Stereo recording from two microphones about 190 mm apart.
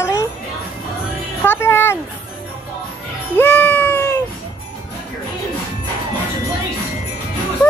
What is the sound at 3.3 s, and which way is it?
Music, 10° left (ahead or behind).